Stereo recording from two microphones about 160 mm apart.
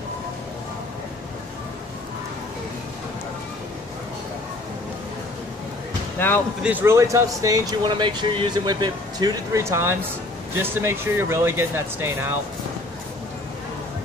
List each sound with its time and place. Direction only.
6.1 s speech: 15° left (ahead or behind)
6.6 s speech: 10° right (ahead or behind)